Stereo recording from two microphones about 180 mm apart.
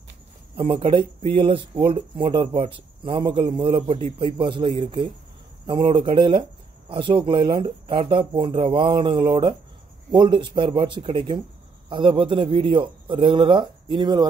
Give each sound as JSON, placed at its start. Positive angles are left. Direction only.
{"t": 0.6, "sound": "speech", "side_deg": -30}